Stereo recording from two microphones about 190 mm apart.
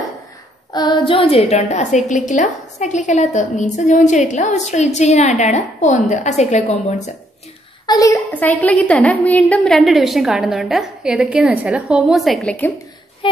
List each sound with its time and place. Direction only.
0.7 s a woman's voice: 25° left (ahead or behind)
7.8 s a woman's voice: 20° left (ahead or behind)
13.2 s child singing: 30° left (ahead or behind)